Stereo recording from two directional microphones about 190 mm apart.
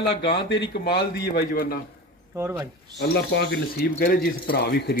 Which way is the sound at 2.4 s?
15° right (ahead or behind).